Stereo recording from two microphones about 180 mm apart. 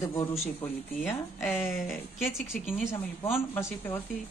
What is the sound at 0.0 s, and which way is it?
Speech, 20° left (ahead or behind).